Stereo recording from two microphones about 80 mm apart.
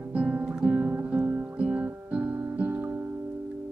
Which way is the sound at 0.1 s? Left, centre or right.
Centre.